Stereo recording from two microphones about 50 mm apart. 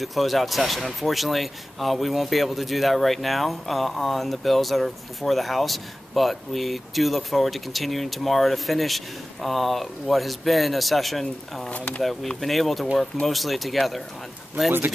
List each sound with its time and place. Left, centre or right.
0.0 s speech: centre
11.7 s speech: left
12.0 s speech: centre